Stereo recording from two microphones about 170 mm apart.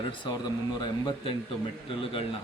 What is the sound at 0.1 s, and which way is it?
Speech, 25° left (ahead or behind).